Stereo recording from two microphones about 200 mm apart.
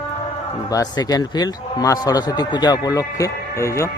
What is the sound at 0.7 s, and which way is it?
Speech, 20° left (ahead or behind).